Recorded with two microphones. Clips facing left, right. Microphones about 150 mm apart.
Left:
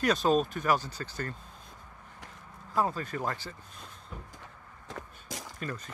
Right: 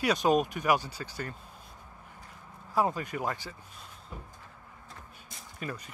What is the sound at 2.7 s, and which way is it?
Speech, 15° right (ahead or behind).